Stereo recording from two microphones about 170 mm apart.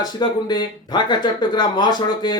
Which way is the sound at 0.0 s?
25° left (ahead or behind).